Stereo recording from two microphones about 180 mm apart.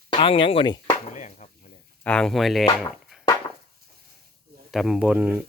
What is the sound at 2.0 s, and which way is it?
Speech, 5° left (ahead or behind).